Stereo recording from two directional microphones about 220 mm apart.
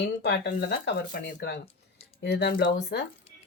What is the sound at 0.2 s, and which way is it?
Speech, 50° left (ahead or behind).